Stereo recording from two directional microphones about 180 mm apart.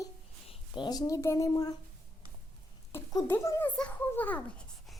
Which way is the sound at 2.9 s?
10° left (ahead or behind).